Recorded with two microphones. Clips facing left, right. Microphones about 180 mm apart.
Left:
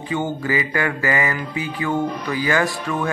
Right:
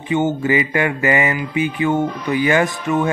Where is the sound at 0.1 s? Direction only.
20° right (ahead or behind).